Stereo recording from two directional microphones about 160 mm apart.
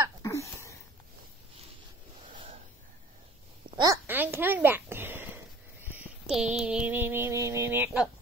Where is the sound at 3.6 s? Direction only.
25° right (ahead or behind).